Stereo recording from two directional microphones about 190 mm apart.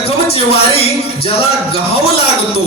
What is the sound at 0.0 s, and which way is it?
A man's voice, 30° left (ahead or behind).